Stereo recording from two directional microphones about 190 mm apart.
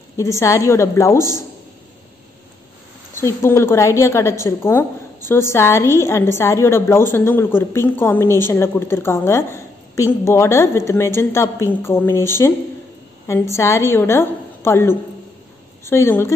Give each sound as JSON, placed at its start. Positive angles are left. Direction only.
{"t": 0.2, "sound": "a woman's voice", "side_deg": 15}
{"t": 3.2, "sound": "a woman's voice", "side_deg": 15}